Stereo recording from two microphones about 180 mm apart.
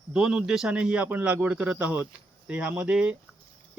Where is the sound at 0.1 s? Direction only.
5° right (ahead or behind).